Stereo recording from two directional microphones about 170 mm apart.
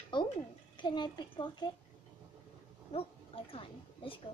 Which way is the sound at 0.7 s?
25° left (ahead or behind).